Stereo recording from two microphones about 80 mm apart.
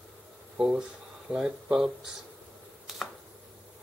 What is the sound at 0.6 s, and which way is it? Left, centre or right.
Speech, centre.